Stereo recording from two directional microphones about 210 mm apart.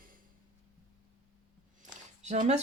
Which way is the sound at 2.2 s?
35° right (ahead or behind).